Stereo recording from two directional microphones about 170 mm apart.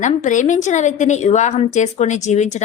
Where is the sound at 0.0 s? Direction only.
45° left (ahead or behind).